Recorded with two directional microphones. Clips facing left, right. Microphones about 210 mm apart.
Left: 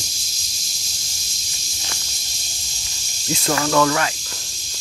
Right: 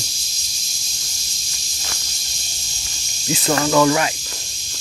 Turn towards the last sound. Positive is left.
turn(degrees=-15)  # may be behind; listen again after turning